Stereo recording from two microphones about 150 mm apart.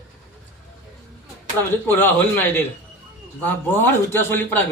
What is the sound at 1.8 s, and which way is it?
Speech, 15° left (ahead or behind).